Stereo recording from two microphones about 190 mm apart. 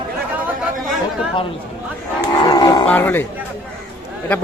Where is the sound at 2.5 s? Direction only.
20° left (ahead or behind).